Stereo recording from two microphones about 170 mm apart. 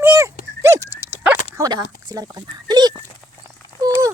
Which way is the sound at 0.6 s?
20° right (ahead or behind).